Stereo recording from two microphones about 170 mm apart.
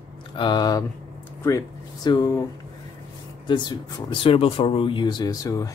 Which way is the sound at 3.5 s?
25° left (ahead or behind).